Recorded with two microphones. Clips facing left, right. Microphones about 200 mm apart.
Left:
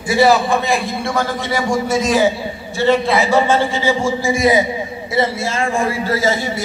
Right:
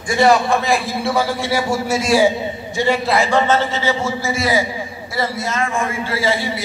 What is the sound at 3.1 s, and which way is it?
A man's voice, 5° left (ahead or behind).